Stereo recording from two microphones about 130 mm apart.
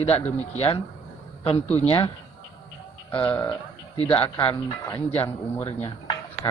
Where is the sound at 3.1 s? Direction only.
10° left (ahead or behind).